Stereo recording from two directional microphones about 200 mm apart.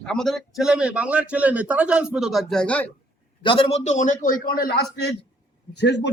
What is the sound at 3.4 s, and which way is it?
A man's voice, 25° left (ahead or behind).